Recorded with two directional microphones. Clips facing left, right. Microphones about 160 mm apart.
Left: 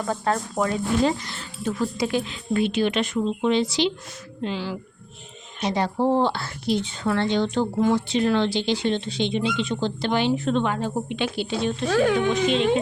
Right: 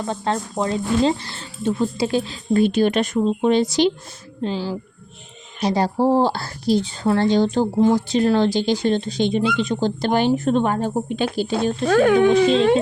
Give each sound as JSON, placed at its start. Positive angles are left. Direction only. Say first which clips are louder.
{"t": 0.0, "sound": "speech", "louder": "right 1 dB", "side_deg": -25}